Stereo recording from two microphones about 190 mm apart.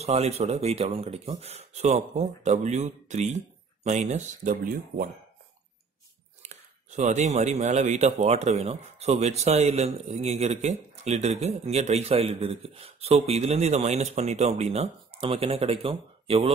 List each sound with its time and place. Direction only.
0.0 s speech: 35° right (ahead or behind)
6.4 s speech: 35° right (ahead or behind)